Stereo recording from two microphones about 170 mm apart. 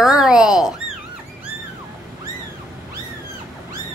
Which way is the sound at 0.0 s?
5° right (ahead or behind).